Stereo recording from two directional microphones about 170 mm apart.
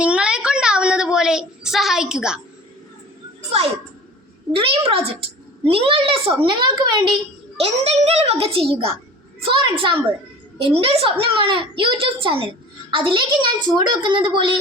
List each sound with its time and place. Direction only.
0.0 s a sound: 5° right (ahead or behind)
4.5 s a child's voice: 35° right (ahead or behind)
7.6 s a child's voice: 40° right (ahead or behind)